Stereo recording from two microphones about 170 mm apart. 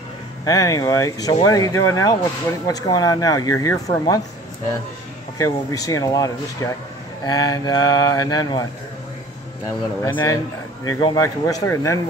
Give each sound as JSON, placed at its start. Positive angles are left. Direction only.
{"t": 0.5, "sound": "a man's voice", "side_deg": 20}
{"t": 5.4, "sound": "a man's voice", "side_deg": 20}
{"t": 10.0, "sound": "a man's voice", "side_deg": 20}